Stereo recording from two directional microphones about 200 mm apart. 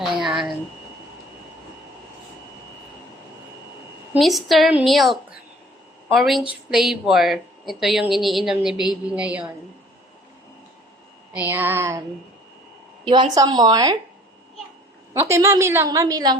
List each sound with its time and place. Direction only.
0.0 s a sound: centre (ahead or behind)
4.1 s a woman's voice: centre (ahead or behind)
11.3 s a woman's voice: 10° right (ahead or behind)
13.3 s speech: 20° right (ahead or behind)
15.1 s a woman's voice: 15° right (ahead or behind)